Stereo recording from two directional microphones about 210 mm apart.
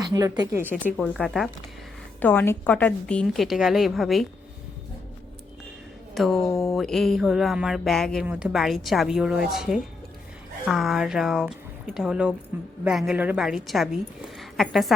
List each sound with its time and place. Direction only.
0.0 s speech: 15° right (ahead or behind)
0.9 s speech: centre (ahead or behind)
6.1 s speech: centre (ahead or behind)
6.5 s a sound: 15° left (ahead or behind)
6.7 s speech: centre (ahead or behind)
14.3 s a sound: centre (ahead or behind)